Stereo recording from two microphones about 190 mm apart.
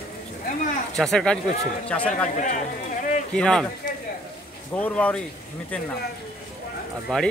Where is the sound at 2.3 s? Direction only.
40° left (ahead or behind).